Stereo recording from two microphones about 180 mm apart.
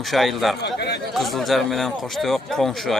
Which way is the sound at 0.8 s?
65° left (ahead or behind).